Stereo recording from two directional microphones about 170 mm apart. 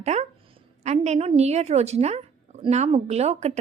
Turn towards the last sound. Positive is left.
turn(degrees=-40)  # may be behind; listen again after turning